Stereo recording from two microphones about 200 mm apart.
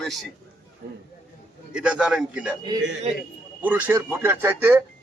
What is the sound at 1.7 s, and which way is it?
Speech, 5° right (ahead or behind).